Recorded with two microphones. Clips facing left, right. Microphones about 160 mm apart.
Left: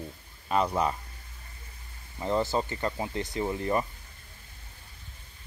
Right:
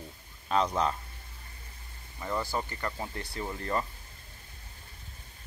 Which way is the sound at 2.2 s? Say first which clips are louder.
Left 5 dB; 25° left (ahead or behind).